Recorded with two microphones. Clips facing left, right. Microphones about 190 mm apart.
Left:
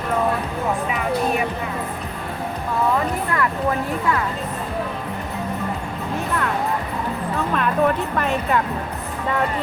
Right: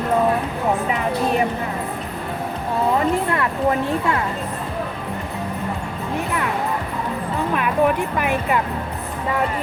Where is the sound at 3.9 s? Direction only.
25° right (ahead or behind).